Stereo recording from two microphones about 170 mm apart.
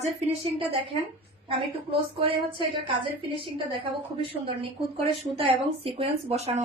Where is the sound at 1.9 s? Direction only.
30° right (ahead or behind).